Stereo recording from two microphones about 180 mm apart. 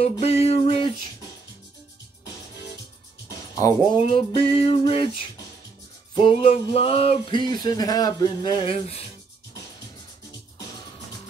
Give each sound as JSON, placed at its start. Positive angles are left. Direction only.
{"t": 0.0, "sound": "music", "side_deg": 35}
{"t": 3.3, "sound": "speech", "side_deg": 20}